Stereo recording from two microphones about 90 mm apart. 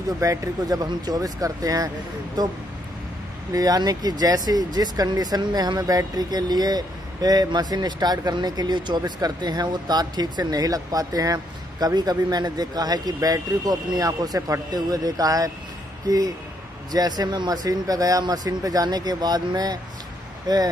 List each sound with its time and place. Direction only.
0.2 s speech: 40° right (ahead or behind)
3.5 s speech: 45° right (ahead or behind)
16.9 s speech: 50° right (ahead or behind)